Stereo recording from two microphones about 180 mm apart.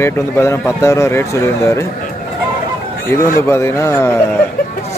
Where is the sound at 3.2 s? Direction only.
15° left (ahead or behind).